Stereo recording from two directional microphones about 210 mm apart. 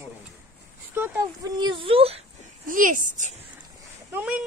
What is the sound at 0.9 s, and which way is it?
Speech, 10° right (ahead or behind).